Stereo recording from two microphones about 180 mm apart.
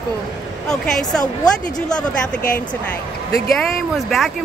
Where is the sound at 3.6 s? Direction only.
Centre (ahead or behind).